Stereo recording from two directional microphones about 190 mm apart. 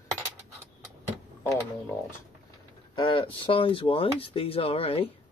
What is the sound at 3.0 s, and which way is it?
Speech, 25° left (ahead or behind).